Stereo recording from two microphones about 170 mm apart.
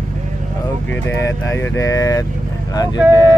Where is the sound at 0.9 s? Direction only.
15° left (ahead or behind).